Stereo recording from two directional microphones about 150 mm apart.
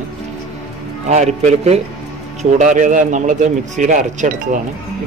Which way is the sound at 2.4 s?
55° right (ahead or behind).